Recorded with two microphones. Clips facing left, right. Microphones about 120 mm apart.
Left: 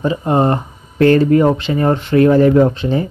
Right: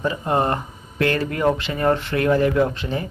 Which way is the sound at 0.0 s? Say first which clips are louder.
Left 6 dB; 25° left (ahead or behind).